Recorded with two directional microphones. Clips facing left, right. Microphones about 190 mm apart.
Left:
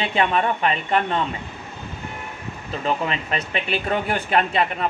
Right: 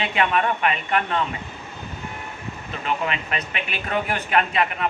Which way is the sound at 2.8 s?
35° left (ahead or behind).